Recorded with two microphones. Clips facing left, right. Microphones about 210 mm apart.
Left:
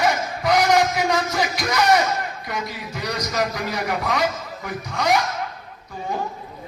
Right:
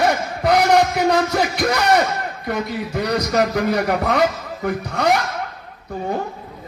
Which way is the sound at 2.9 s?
65° right (ahead or behind).